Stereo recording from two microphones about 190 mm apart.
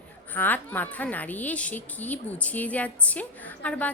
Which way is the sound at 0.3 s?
10° left (ahead or behind).